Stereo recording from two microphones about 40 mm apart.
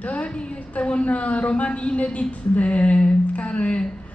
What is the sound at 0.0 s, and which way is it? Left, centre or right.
A woman's voice, left.